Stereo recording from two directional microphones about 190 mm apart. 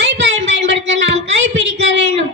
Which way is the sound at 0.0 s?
70° right (ahead or behind).